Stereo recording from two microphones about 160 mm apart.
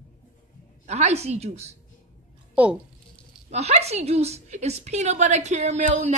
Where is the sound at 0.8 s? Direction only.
45° right (ahead or behind).